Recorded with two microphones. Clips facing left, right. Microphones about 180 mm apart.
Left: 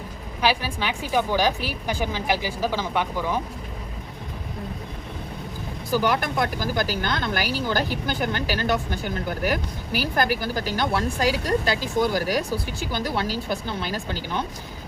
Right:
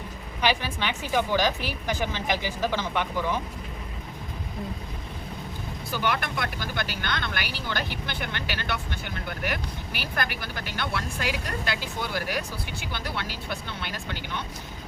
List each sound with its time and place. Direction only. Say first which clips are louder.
0.4 s a woman's voice: left 2 dB; 10° left (ahead or behind)
5.9 s speech: left 6 dB; 40° left (ahead or behind)